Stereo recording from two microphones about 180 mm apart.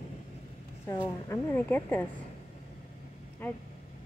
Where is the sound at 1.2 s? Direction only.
10° left (ahead or behind).